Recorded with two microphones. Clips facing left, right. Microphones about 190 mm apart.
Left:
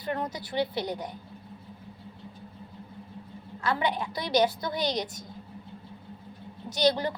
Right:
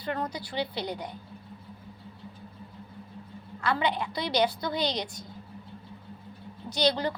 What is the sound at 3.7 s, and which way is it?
A woman's voice, 20° left (ahead or behind).